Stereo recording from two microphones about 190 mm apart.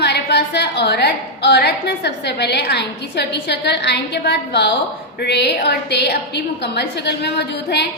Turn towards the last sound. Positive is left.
turn(degrees=60)  # may be behind; listen again after turning